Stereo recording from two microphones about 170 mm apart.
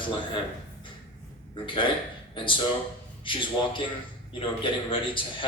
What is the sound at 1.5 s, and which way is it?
A man's voice, 30° left (ahead or behind).